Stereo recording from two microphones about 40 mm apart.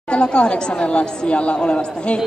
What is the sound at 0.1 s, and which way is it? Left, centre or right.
A woman's voice, left.